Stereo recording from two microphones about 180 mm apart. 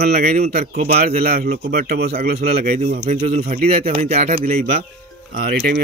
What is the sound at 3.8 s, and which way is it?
Speech, 40° right (ahead or behind).